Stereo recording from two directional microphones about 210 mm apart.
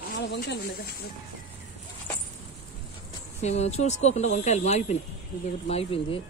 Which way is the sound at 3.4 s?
30° left (ahead or behind).